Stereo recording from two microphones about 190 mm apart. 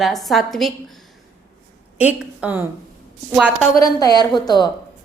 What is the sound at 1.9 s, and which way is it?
Speech, 5° right (ahead or behind).